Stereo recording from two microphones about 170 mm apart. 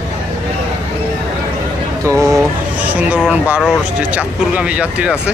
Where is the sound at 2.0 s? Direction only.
15° right (ahead or behind).